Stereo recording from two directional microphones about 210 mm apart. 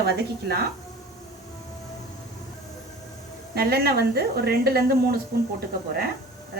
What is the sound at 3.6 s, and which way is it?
Speech, 50° right (ahead or behind).